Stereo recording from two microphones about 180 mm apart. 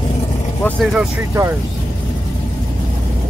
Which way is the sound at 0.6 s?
10° left (ahead or behind).